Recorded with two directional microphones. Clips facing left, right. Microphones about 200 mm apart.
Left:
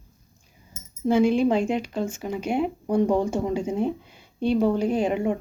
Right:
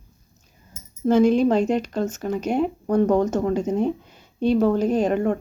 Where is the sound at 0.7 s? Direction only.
10° left (ahead or behind).